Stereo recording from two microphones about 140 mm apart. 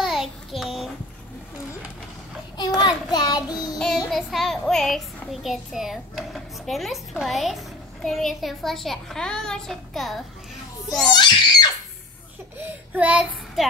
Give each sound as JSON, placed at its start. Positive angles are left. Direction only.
{"t": 0.0, "sound": "child singing", "side_deg": -5}
{"t": 2.5, "sound": "child singing", "side_deg": 30}
{"t": 3.7, "sound": "a child's voice", "side_deg": 0}
{"t": 11.1, "sound": "screaming", "side_deg": 30}
{"t": 12.5, "sound": "child singing", "side_deg": -10}